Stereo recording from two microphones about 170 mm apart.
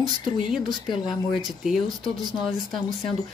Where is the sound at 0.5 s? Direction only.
Centre (ahead or behind).